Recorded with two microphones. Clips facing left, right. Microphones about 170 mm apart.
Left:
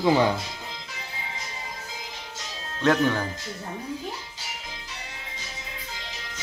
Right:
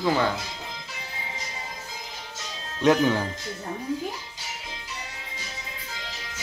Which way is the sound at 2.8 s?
15° right (ahead or behind).